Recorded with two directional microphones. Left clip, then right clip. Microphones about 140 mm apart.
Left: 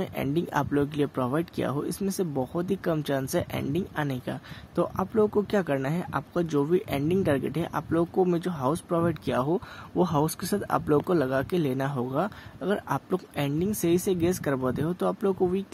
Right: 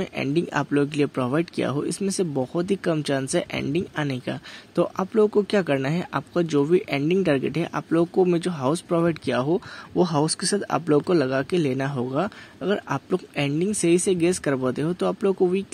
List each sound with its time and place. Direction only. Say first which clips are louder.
0.0 s speech: right 4 dB; 20° right (ahead or behind)